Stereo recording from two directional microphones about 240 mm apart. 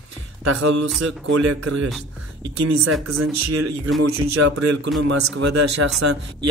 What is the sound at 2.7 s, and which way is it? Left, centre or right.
A man's voice, right.